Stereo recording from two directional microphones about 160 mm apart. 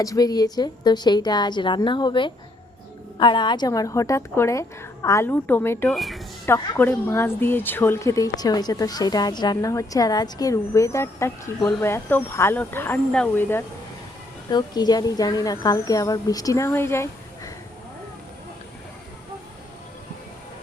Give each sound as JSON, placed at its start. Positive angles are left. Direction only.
{"t": 0.0, "sound": "speech", "side_deg": 25}
{"t": 5.9, "sound": "speech", "side_deg": 0}
{"t": 6.4, "sound": "a woman's voice", "side_deg": 15}
{"t": 14.5, "sound": "speech", "side_deg": 25}